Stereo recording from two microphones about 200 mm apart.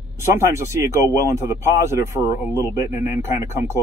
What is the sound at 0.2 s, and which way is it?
Speech, 15° right (ahead or behind).